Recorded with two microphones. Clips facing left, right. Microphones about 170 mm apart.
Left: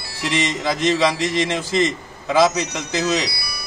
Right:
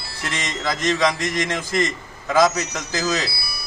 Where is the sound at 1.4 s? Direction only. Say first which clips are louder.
Left 3 dB; 25° left (ahead or behind).